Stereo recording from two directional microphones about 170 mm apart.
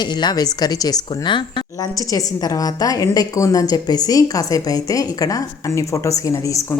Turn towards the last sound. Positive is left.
turn(degrees=20)  # may be behind; listen again after turning